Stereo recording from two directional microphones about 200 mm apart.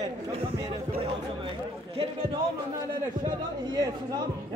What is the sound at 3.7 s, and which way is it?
Speech, 20° right (ahead or behind).